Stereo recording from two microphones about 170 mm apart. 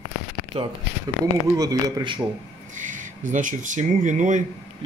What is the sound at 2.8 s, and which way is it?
Speech, 50° right (ahead or behind).